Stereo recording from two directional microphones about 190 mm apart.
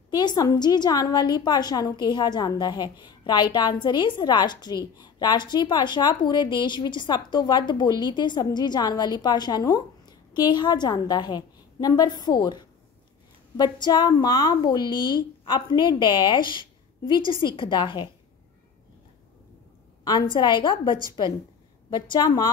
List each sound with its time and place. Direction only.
0.2 s a woman's voice: 20° left (ahead or behind)
20.1 s a woman's voice: 25° left (ahead or behind)
21.9 s a woman's voice: 20° left (ahead or behind)